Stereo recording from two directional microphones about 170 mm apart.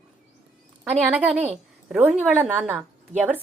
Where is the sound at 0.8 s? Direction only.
5° right (ahead or behind).